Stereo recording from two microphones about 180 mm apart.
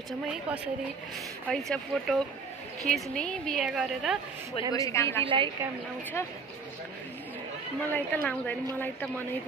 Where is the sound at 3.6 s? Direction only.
5° right (ahead or behind).